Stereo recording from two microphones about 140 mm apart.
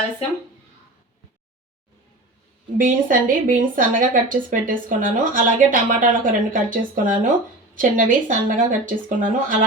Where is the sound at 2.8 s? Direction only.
75° right (ahead or behind).